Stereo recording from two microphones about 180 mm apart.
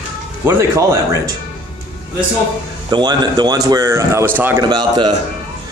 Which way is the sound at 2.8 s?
25° right (ahead or behind).